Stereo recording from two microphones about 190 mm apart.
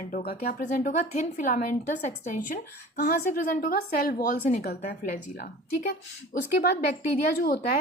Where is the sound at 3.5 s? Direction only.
45° left (ahead or behind).